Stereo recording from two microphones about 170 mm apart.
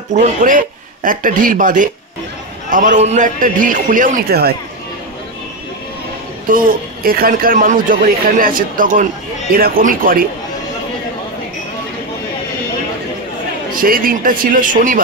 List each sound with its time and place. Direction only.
0.1 s a man's voice: 50° right (ahead or behind); by 4.6 s 65° right (ahead or behind)
6.5 s speech: 55° right (ahead or behind)
13.7 s a man's voice: 55° right (ahead or behind)